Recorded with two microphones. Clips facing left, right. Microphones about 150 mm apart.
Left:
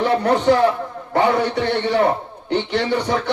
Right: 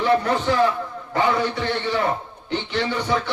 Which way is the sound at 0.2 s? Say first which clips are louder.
Left 5 dB; 60° left (ahead or behind).